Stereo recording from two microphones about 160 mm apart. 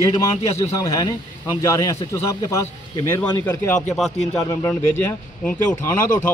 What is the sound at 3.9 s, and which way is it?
Speech, centre (ahead or behind).